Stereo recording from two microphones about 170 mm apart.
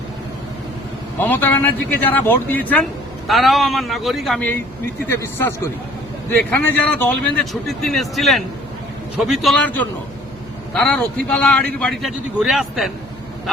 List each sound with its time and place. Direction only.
1.2 s a man's voice: 10° left (ahead or behind)